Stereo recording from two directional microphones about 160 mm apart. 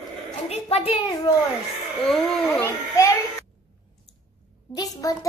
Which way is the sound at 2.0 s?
Centre (ahead or behind).